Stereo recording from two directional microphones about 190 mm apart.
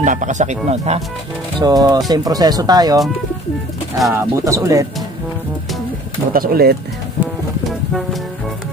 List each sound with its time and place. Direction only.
0.0 s speech: 40° right (ahead or behind)
1.6 s speech: 20° right (ahead or behind)
4.0 s speech: 10° right (ahead or behind)
6.3 s speech: 50° right (ahead or behind)